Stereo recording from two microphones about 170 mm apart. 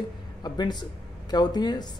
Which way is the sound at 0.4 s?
25° left (ahead or behind).